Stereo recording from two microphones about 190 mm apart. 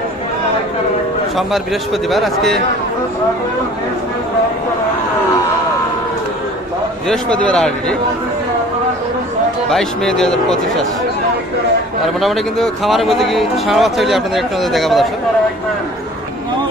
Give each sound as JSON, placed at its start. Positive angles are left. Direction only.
{"t": 1.3, "sound": "speech", "side_deg": 0}
{"t": 7.1, "sound": "speech", "side_deg": 5}
{"t": 9.7, "sound": "speech", "side_deg": 5}
{"t": 12.2, "sound": "speech", "side_deg": 0}